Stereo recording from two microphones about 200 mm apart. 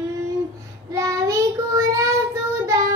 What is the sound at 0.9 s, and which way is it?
Child singing, 15° right (ahead or behind).